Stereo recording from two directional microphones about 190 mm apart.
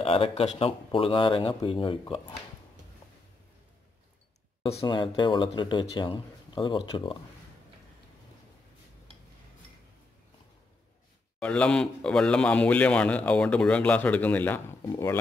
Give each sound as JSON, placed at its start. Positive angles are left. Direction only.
{"t": 0.0, "sound": "speech", "side_deg": 30}
{"t": 4.7, "sound": "speech", "side_deg": 25}
{"t": 11.3, "sound": "a man's voice", "side_deg": 5}